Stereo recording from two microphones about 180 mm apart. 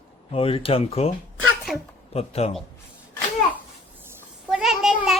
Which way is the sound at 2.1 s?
35° left (ahead or behind).